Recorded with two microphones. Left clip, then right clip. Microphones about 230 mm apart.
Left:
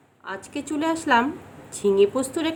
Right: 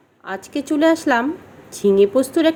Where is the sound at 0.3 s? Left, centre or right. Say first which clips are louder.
Right 7 dB; centre.